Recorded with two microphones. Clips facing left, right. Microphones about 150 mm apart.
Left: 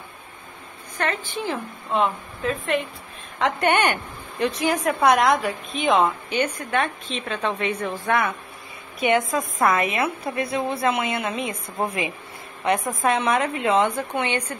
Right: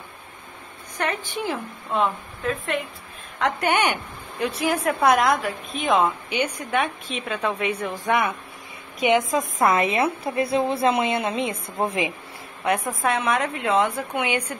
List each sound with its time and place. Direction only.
0.9 s a woman's voice: 15° right (ahead or behind)
2.0 s speech: centre (ahead or behind)
6.3 s a woman's voice: 10° right (ahead or behind)
12.6 s a woman's voice: centre (ahead or behind)